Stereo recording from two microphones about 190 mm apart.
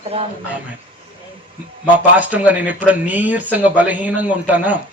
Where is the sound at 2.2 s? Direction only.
10° right (ahead or behind).